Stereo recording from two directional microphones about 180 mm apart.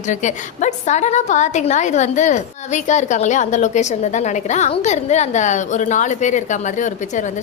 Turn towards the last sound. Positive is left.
turn(degrees=40)  # may be behind; listen again after turning